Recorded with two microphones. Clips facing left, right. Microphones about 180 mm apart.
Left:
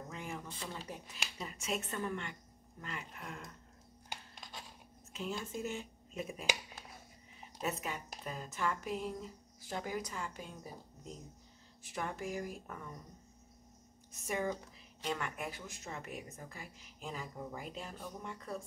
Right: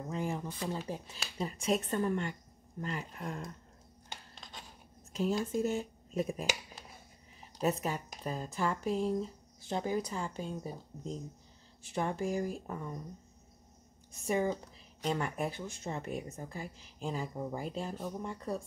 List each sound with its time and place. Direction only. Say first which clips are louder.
0.1 s speech: right 11 dB; 35° right (ahead or behind)
4.1 s rub: even; 5° left (ahead or behind)
5.1 s speech: right 9 dB; 40° right (ahead or behind)
7.6 s speech: right 7 dB; 35° right (ahead or behind)
14.2 s speech: right 5 dB; 30° right (ahead or behind)